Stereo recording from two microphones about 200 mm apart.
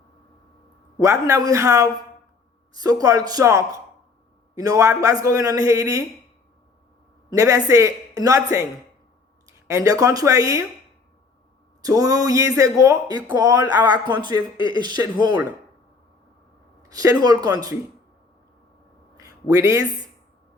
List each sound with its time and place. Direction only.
0.9 s a man's voice: 15° right (ahead or behind)
7.3 s a man's voice: 15° right (ahead or behind)
9.6 s a man's voice: 15° right (ahead or behind)
11.8 s a man's voice: 15° right (ahead or behind)
16.9 s a man's voice: 20° right (ahead or behind)
19.1 s a sound: 15° right (ahead or behind)